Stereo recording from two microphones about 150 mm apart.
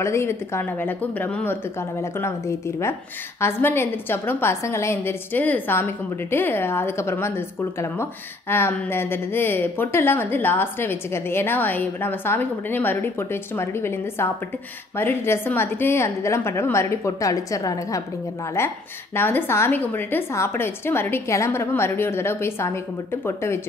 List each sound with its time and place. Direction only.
0.0 s speech: 20° left (ahead or behind)